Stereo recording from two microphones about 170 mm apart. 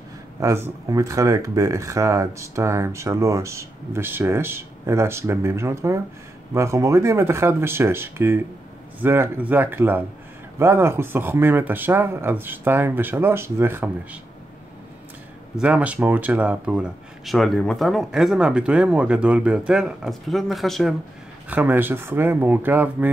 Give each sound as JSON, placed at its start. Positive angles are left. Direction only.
{"t": 0.4, "sound": "speech", "side_deg": -20}
{"t": 15.5, "sound": "speech", "side_deg": -10}
{"t": 21.5, "sound": "speech", "side_deg": -10}